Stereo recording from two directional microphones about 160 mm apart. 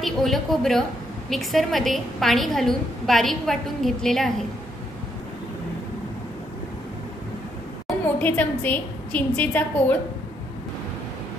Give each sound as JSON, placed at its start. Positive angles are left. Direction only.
{"t": 0.0, "sound": "a woman's voice", "side_deg": 0}
{"t": 8.2, "sound": "a woman's voice", "side_deg": 10}